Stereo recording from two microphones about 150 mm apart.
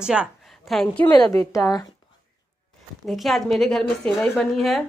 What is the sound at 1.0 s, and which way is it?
Speech, 25° left (ahead or behind).